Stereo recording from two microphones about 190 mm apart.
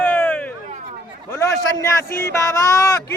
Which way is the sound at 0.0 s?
10° left (ahead or behind).